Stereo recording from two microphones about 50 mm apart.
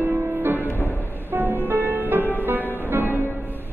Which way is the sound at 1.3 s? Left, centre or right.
Right.